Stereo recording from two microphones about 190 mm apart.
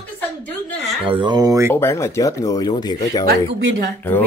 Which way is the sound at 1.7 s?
15° left (ahead or behind).